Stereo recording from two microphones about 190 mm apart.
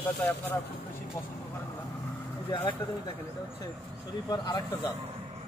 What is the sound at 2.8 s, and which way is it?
Speech, 10° left (ahead or behind).